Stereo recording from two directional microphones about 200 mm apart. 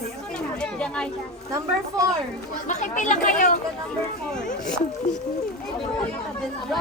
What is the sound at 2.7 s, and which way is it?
Speech, 35° left (ahead or behind).